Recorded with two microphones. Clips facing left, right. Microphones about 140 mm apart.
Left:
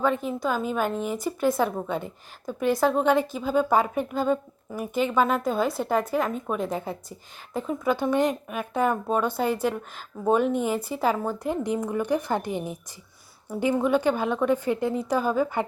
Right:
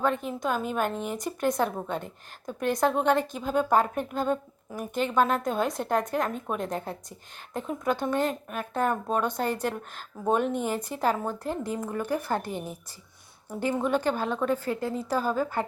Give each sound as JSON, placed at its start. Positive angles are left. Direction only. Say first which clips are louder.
{"t": 0.3, "sound": "a woman's voice", "louder": "left 2 dB", "side_deg": 0}